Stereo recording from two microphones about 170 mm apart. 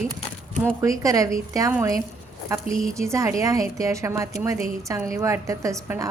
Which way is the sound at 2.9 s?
15° right (ahead or behind).